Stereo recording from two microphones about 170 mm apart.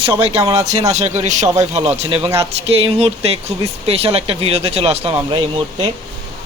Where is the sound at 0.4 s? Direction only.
20° right (ahead or behind).